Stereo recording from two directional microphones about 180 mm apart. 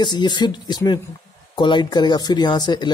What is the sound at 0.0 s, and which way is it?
Speech, 25° left (ahead or behind).